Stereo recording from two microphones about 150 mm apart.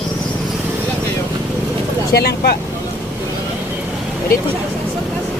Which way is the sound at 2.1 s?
90° left.